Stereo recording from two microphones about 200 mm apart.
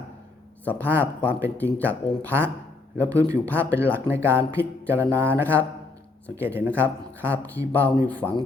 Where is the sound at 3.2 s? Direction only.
15° right (ahead or behind).